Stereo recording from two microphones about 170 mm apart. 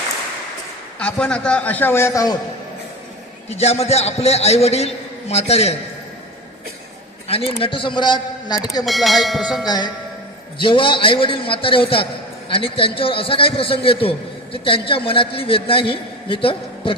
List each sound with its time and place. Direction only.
0.9 s a man's voice: 5° left (ahead or behind)
3.5 s a man's voice: 40° left (ahead or behind)
7.3 s a man's voice: 35° left (ahead or behind)
8.8 s bell: centre (ahead or behind)
9.6 s a man's voice: 25° left (ahead or behind)